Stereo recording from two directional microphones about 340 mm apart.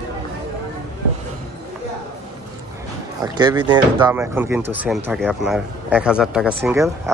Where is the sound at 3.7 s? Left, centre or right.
Centre.